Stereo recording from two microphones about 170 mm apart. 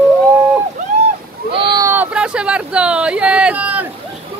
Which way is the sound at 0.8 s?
45° right (ahead or behind).